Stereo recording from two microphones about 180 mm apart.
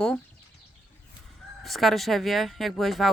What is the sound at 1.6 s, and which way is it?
Speech, centre (ahead or behind).